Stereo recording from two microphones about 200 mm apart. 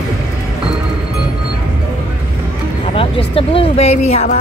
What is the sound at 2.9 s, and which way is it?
Speech, 30° left (ahead or behind).